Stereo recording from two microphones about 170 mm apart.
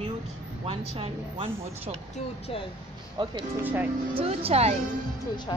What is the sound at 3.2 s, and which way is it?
Speech, 25° right (ahead or behind).